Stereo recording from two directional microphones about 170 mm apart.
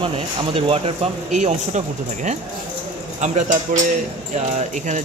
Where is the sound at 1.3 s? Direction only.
45° right (ahead or behind).